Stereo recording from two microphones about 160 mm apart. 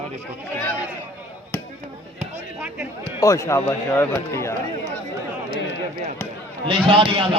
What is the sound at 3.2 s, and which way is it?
Speech, 20° left (ahead or behind).